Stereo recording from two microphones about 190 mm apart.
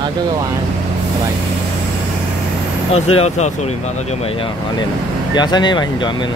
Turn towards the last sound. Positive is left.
turn(degrees=25)  # may be behind; listen again after turning